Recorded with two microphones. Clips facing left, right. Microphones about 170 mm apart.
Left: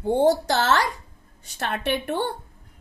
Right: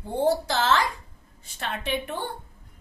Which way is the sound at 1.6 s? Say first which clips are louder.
Left 4 dB; 70° left (ahead or behind).